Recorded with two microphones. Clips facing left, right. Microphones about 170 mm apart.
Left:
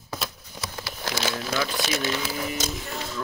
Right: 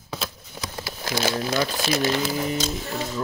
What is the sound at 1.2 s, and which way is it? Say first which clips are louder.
Speech: right 4 dB; 40° right (ahead or behind).